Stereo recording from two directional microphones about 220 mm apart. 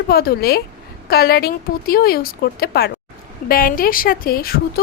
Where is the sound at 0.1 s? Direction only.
45° left (ahead or behind).